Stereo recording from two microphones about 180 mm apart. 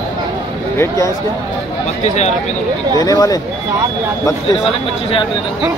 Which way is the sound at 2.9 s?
20° left (ahead or behind).